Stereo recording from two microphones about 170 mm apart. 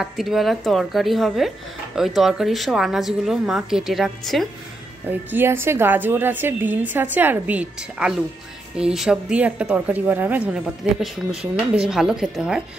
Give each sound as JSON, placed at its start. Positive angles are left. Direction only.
{"t": 0.0, "sound": "a woman's voice", "side_deg": 0}
{"t": 5.0, "sound": "a woman's voice", "side_deg": -10}